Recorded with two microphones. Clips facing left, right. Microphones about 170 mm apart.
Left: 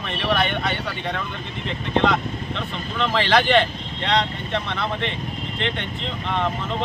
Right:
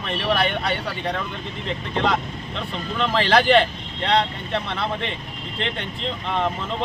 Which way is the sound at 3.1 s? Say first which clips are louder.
Right 1 dB; 35° right (ahead or behind).